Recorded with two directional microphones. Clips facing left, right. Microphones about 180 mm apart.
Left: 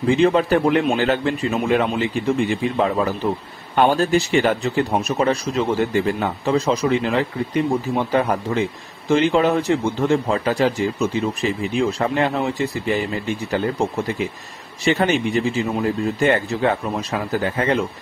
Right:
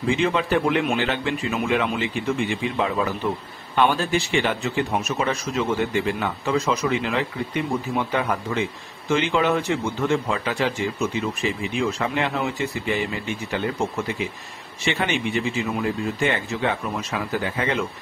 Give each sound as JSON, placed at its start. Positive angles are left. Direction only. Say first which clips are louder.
{"t": 0.1, "sound": "speech", "louder": "left 5 dB", "side_deg": 40}